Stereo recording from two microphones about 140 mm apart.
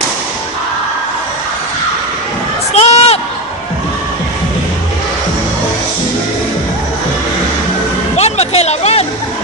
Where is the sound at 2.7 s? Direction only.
45° left (ahead or behind).